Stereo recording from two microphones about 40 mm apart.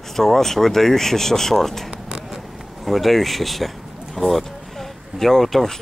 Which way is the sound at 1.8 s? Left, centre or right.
Right.